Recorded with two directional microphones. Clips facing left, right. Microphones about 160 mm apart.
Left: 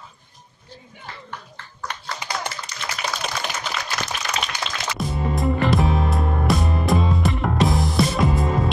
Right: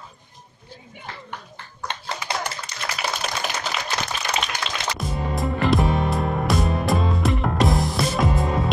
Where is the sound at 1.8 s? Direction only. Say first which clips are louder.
Right 1 dB; 25° right (ahead or behind).